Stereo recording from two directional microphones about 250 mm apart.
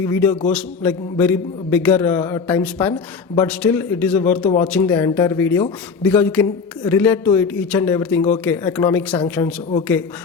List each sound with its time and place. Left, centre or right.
0.0 s a man's voice: centre